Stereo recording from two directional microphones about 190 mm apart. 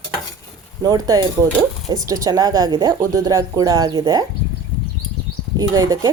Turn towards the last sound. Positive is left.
turn(degrees=-15)  # may be behind; listen again after turning